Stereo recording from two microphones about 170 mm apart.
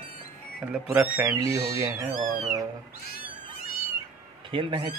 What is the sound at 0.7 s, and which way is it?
Speech, 10° right (ahead or behind).